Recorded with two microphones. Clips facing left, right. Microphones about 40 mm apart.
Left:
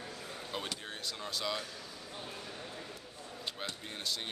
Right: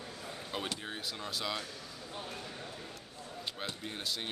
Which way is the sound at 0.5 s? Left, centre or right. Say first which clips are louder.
Right 2 dB; centre.